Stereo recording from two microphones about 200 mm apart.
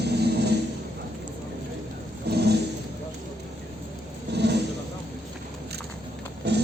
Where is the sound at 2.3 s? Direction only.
55° right (ahead or behind).